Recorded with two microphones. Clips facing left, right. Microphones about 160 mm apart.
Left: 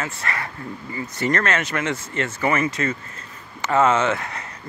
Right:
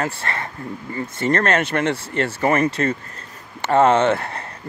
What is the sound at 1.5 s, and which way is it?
Speech, 45° right (ahead or behind).